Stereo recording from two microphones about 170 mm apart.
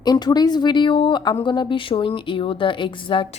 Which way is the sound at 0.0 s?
25° left (ahead or behind).